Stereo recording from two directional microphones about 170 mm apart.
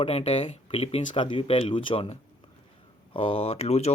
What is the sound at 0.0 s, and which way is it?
Speech, 35° left (ahead or behind).